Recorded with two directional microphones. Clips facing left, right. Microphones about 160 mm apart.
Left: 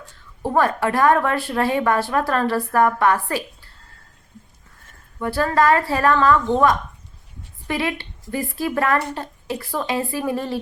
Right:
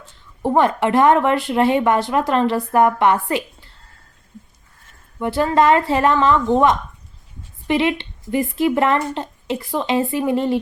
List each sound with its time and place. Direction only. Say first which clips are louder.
0.4 s a woman's voice: right 3 dB; 20° right (ahead or behind)
5.2 s a woman's voice: right 3 dB; 20° right (ahead or behind)
7.7 s a woman's voice: right 6 dB; 20° right (ahead or behind)